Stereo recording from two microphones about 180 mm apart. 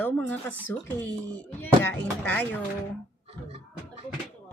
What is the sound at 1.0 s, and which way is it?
Speech, 10° left (ahead or behind).